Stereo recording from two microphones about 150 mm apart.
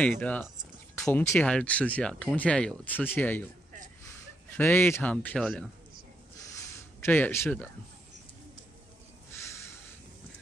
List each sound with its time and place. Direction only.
0.2 s speech: 10° left (ahead or behind)
0.9 s a sound: 5° left (ahead or behind)
1.3 s speech: 5° left (ahead or behind)
4.6 s speech: 15° left (ahead or behind)
7.1 s speech: 15° left (ahead or behind)